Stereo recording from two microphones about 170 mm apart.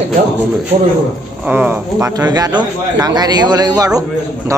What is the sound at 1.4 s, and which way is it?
A man's voice, 10° right (ahead or behind).